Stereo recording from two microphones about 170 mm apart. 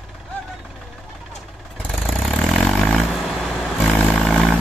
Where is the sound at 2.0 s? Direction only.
Centre (ahead or behind).